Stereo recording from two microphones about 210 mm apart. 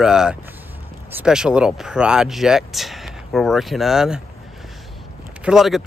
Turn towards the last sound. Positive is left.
turn(degrees=0)  # may be behind; listen again after turning